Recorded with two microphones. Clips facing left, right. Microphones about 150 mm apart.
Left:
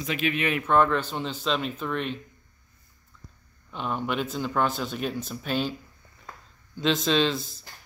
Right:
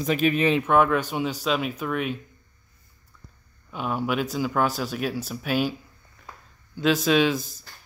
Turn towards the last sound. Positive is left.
turn(degrees=-10)  # may be behind; listen again after turning